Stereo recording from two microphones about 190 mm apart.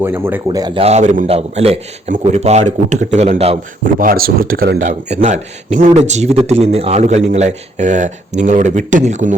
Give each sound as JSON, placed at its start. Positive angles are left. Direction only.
{"t": 0.0, "sound": "speech", "side_deg": -10}
{"t": 0.4, "sound": "speech", "side_deg": -20}
{"t": 0.8, "sound": "speech", "side_deg": -35}
{"t": 4.0, "sound": "speech", "side_deg": -50}